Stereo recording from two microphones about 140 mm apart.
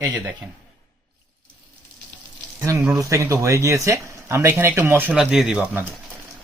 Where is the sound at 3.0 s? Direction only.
25° right (ahead or behind).